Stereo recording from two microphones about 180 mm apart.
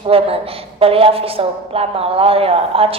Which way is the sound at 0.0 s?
30° right (ahead or behind).